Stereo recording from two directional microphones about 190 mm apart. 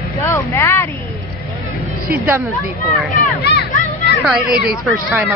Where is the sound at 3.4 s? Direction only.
60° left (ahead or behind).